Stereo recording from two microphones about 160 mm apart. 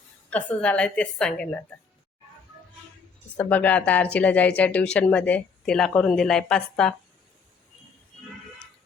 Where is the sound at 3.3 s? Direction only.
10° left (ahead or behind).